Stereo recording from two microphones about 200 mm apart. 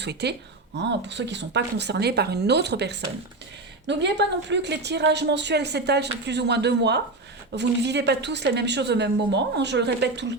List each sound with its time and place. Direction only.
0.0 s a woman's voice: 55° right (ahead or behind)